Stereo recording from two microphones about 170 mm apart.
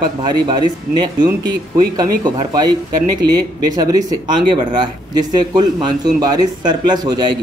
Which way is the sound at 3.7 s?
20° right (ahead or behind).